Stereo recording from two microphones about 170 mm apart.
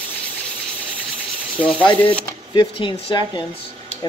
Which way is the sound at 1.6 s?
10° left (ahead or behind).